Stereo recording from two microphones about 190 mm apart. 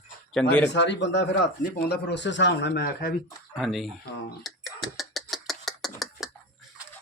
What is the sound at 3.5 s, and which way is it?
Speech, centre (ahead or behind).